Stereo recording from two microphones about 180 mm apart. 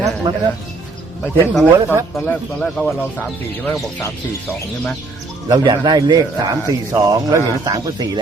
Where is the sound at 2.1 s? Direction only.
10° left (ahead or behind).